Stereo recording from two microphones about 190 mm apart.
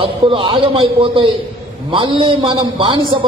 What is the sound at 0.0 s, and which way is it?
A man's voice, 30° right (ahead or behind).